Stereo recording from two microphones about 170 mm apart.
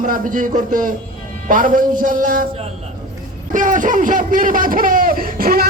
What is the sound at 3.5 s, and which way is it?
Speech, 50° right (ahead or behind).